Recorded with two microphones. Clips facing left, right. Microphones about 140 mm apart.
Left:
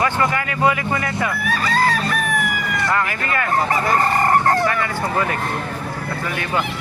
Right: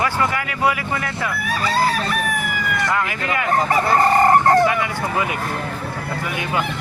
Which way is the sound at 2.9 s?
10° right (ahead or behind).